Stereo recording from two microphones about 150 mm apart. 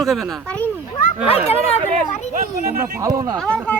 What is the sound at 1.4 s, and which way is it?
Speech, 40° left (ahead or behind).